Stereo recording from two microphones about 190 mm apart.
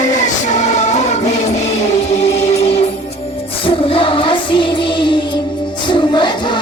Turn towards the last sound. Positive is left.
turn(degrees=25)  # may be behind; listen again after turning